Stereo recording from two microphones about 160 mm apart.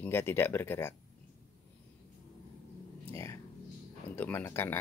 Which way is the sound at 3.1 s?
15° left (ahead or behind).